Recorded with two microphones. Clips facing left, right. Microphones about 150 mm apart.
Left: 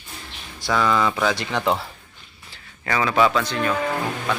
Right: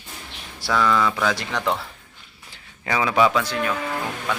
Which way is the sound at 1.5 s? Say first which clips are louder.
Left 2 dB; 25° left (ahead or behind).